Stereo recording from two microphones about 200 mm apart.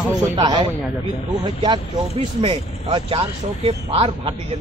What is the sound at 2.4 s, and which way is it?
Speech, 25° right (ahead or behind).